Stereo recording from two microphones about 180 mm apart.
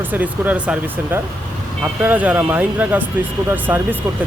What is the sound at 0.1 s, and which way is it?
Speech, 10° right (ahead or behind).